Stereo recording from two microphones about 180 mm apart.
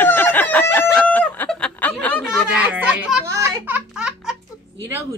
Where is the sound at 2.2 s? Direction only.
5° right (ahead or behind).